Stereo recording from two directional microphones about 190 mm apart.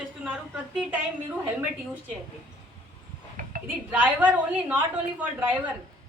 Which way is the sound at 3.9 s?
10° right (ahead or behind).